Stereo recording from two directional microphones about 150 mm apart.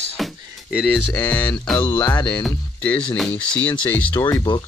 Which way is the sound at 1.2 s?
10° left (ahead or behind).